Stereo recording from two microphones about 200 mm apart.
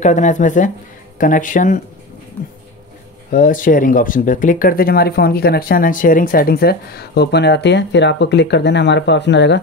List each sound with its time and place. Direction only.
0.0 s speech: 40° left (ahead or behind)
3.3 s speech: 40° left (ahead or behind); by 9.6 s 60° left (ahead or behind)